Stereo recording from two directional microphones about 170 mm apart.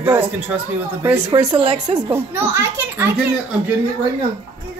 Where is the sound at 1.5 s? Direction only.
30° right (ahead or behind).